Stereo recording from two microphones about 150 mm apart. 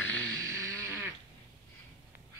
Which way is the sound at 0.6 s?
20° right (ahead or behind).